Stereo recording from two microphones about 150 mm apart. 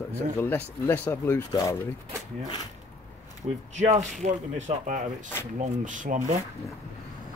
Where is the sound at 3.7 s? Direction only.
50° right (ahead or behind).